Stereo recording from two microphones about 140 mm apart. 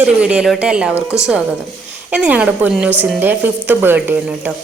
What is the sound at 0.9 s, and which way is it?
Speech, 20° left (ahead or behind).